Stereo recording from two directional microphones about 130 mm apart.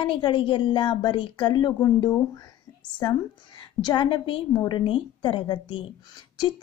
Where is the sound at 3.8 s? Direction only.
35° left (ahead or behind).